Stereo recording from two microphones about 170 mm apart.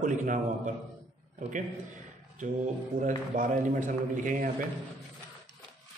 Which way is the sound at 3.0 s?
50° right (ahead or behind).